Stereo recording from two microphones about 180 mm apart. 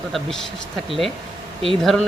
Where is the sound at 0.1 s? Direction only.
Centre (ahead or behind).